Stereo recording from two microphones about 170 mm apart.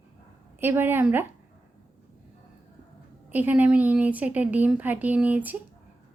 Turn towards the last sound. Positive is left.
turn(degrees=-10)  # may be behind; listen again after turning